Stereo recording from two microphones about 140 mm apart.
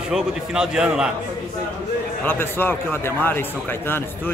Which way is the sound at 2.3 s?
15° left (ahead or behind).